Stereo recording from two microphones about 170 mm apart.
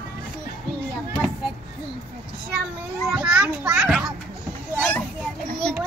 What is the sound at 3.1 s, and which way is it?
Speech, 5° right (ahead or behind).